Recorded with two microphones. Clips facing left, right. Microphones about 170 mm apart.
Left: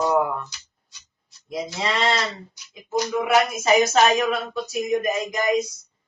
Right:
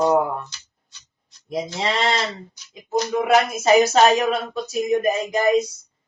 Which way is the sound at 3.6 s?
35° right (ahead or behind).